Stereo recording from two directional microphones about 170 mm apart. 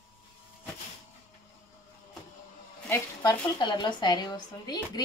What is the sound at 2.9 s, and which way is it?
Speech, 20° left (ahead or behind).